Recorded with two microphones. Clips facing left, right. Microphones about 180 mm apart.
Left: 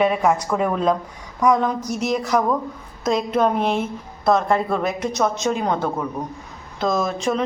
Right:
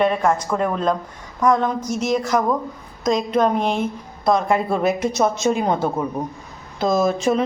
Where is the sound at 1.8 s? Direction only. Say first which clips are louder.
Right 1 dB; 35° left (ahead or behind).